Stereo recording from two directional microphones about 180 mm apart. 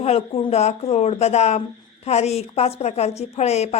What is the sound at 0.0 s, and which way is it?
Speech, 35° left (ahead or behind).